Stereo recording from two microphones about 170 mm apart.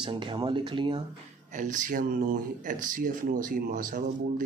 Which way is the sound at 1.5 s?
50° right (ahead or behind).